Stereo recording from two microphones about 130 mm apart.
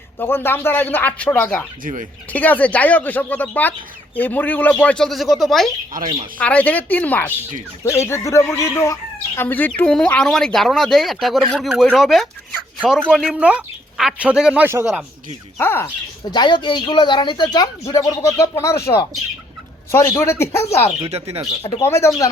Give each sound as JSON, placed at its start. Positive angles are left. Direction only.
{"t": 0.2, "sound": "speech", "side_deg": 15}
{"t": 1.8, "sound": "speech", "side_deg": -90}
{"t": 2.3, "sound": "speech", "side_deg": 15}
{"t": 15.5, "sound": "speech", "side_deg": 15}
{"t": 16.3, "sound": "speech", "side_deg": 35}
{"t": 21.8, "sound": "speech", "side_deg": 20}